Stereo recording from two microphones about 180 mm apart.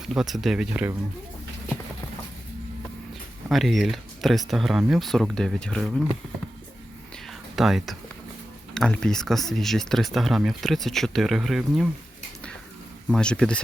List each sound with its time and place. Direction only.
0.1 s speech: centre (ahead or behind)
3.5 s speech: centre (ahead or behind)
7.3 s whispering: centre (ahead or behind)
8.7 s speech: 5° left (ahead or behind)
13.1 s speech: 5° left (ahead or behind)